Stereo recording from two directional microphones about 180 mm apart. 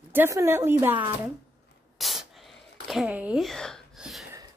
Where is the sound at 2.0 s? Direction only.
Centre (ahead or behind).